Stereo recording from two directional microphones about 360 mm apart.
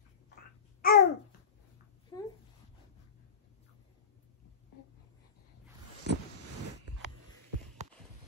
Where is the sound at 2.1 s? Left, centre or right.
Centre.